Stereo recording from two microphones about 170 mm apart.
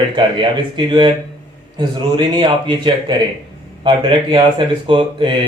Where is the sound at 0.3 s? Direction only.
25° right (ahead or behind).